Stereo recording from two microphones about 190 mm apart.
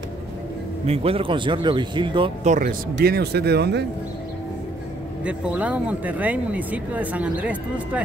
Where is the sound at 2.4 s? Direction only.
40° right (ahead or behind).